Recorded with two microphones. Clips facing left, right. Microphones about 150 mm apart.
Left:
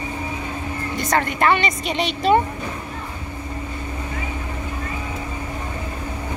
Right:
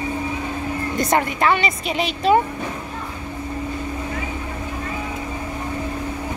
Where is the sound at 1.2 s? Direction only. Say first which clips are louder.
Even; 5° right (ahead or behind).